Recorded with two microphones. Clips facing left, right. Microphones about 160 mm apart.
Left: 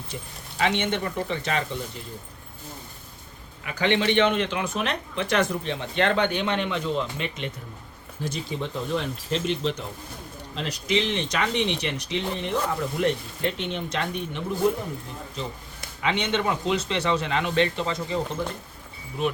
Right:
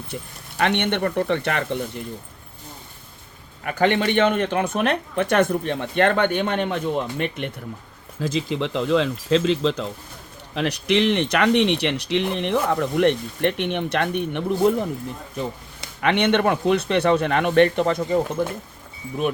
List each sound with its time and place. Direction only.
0.1 s speech: 60° right (ahead or behind)
3.6 s speech: 50° right (ahead or behind)
8.2 s speech: 90° right
10.5 s speech: 65° right (ahead or behind)